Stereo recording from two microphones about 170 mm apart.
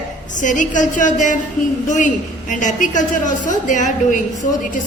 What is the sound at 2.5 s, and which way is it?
A woman's voice, 50° left (ahead or behind).